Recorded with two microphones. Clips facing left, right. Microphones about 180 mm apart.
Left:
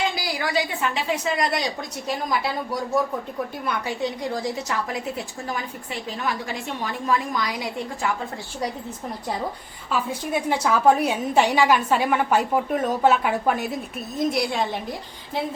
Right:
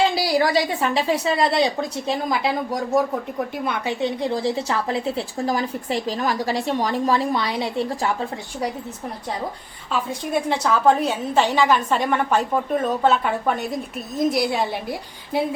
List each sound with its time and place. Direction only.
0.1 s a woman's voice: 30° right (ahead or behind)
9.9 s a woman's voice: 5° left (ahead or behind)